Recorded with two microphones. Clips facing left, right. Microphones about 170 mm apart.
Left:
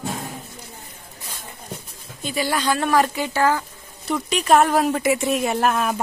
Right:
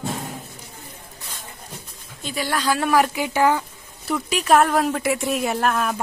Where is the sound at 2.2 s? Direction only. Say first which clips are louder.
Left 1 dB; centre (ahead or behind); by 3.6 s 15° right (ahead or behind).